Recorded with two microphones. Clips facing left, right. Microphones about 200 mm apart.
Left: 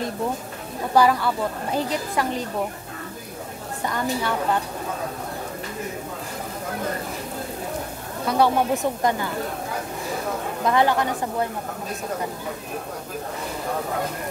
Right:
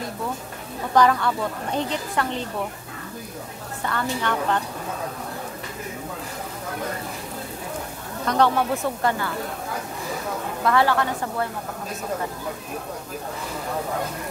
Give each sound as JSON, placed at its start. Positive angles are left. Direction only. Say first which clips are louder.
{"t": 0.9, "sound": "a woman's voice", "louder": "even", "side_deg": 10}
{"t": 3.8, "sound": "a woman's voice", "louder": "left 1 dB", "side_deg": 10}
{"t": 8.3, "sound": "a woman's voice", "louder": "left 1 dB", "side_deg": 10}
{"t": 10.6, "sound": "a woman's voice", "louder": "even", "side_deg": 20}